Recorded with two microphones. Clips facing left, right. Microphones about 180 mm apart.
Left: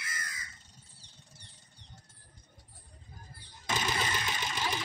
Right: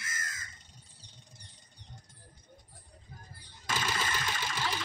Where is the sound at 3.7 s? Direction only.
20° left (ahead or behind).